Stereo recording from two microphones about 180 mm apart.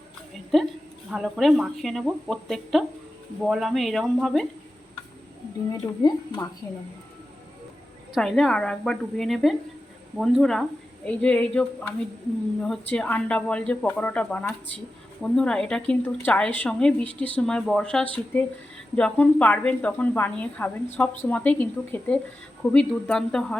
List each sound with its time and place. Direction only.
0.5 s a woman's voice: centre (ahead or behind)
5.8 s speech: 20° left (ahead or behind)
8.1 s a woman's voice: centre (ahead or behind)